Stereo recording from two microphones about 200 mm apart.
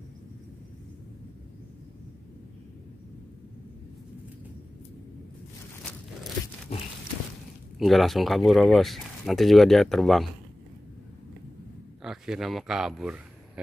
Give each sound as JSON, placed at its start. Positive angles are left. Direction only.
{"t": 6.7, "sound": "a sound", "side_deg": 30}
{"t": 7.8, "sound": "speech", "side_deg": 0}
{"t": 12.0, "sound": "speech", "side_deg": 0}